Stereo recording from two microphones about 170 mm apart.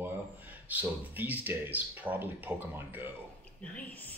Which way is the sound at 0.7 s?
10° right (ahead or behind).